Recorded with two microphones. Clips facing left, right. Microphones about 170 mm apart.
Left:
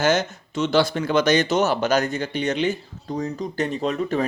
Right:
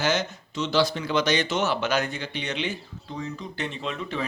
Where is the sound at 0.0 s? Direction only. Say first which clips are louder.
Left 5 dB; 50° left (ahead or behind).